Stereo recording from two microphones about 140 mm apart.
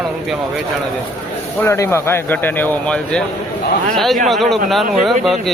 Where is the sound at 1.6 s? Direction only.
20° left (ahead or behind); by 5.5 s centre (ahead or behind).